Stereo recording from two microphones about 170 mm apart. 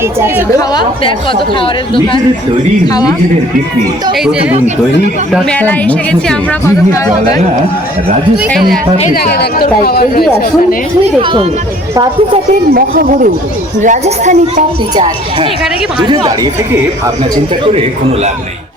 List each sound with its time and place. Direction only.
0.7 s a woman's voice: 25° left (ahead or behind)
2.8 s a woman's voice: 25° left (ahead or behind)
5.3 s a woman's voice: 5° left (ahead or behind)
9.1 s speech: 70° left (ahead or behind)
11.2 s speech: 30° right (ahead or behind)
12.7 s speech: 55° right (ahead or behind)
16.0 s speech: 25° right (ahead or behind)